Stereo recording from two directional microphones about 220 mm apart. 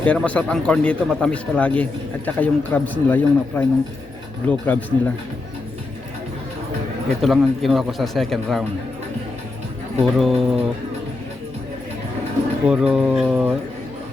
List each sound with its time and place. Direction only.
0.0 s a man's voice: 5° left (ahead or behind)
7.2 s a man's voice: centre (ahead or behind)
10.0 s a man's voice: centre (ahead or behind)
12.6 s a man's voice: 5° right (ahead or behind)